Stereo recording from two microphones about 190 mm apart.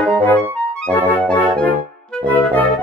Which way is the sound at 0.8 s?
10° left (ahead or behind).